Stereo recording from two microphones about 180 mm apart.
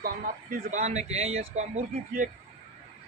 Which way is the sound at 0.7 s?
40° right (ahead or behind).